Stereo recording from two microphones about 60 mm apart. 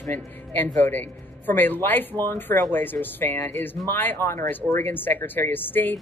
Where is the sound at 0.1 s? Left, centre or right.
Left.